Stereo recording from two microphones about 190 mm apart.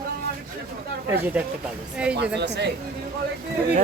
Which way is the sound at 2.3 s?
65° right (ahead or behind).